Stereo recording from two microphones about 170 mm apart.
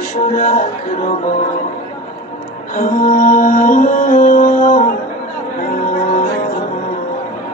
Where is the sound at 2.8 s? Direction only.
50° left (ahead or behind).